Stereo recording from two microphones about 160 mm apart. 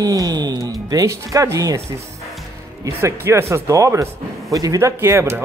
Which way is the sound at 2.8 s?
15° right (ahead or behind).